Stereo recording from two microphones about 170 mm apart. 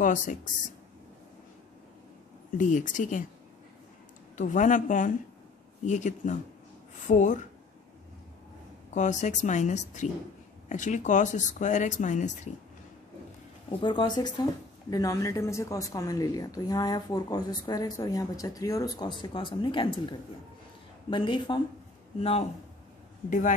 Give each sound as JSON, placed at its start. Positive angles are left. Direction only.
{"t": 0.0, "sound": "speech", "side_deg": 50}
{"t": 2.5, "sound": "speech", "side_deg": 50}
{"t": 4.4, "sound": "speech", "side_deg": 50}
{"t": 8.9, "sound": "speech", "side_deg": 45}
{"t": 13.7, "sound": "a woman's voice", "side_deg": 30}